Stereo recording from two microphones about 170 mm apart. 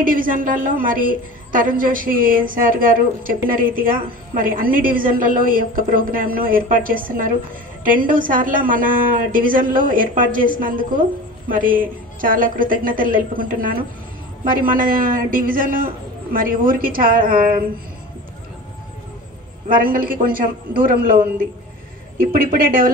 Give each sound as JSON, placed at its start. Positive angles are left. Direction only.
{"t": 0.0, "sound": "a woman's voice", "side_deg": -55}
{"t": 19.7, "sound": "a woman's voice", "side_deg": -55}
{"t": 22.2, "sound": "a woman's voice", "side_deg": -60}